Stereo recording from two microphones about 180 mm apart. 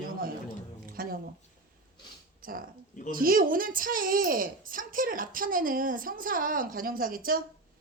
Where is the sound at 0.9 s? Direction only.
55° right (ahead or behind).